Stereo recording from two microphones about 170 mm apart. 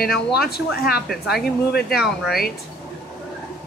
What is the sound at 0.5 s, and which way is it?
Speech, 65° left (ahead or behind).